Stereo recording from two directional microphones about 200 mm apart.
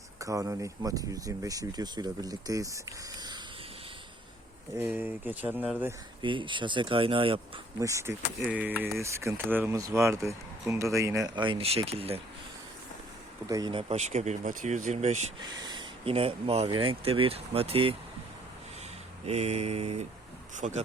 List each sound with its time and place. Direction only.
0.2 s speech: 15° right (ahead or behind)
4.8 s speech: 10° right (ahead or behind)
6.2 s speech: 25° right (ahead or behind)
7.8 s speech: 15° right (ahead or behind)
13.5 s speech: 20° right (ahead or behind)
15.4 s speech: 20° right (ahead or behind)
19.2 s speech: 35° right (ahead or behind)